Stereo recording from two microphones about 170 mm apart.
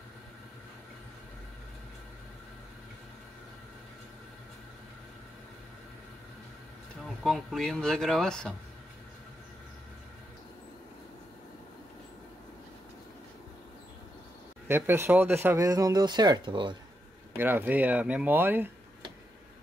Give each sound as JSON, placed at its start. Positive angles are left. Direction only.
{"t": 7.0, "sound": "speech", "side_deg": 0}
{"t": 14.7, "sound": "speech", "side_deg": -15}
{"t": 17.4, "sound": "speech", "side_deg": -10}